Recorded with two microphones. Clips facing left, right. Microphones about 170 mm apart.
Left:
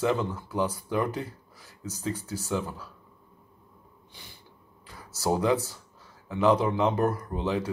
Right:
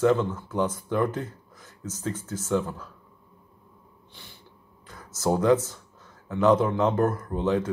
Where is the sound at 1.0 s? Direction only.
50° right (ahead or behind).